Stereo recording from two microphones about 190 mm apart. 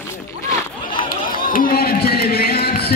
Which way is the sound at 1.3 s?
50° left (ahead or behind).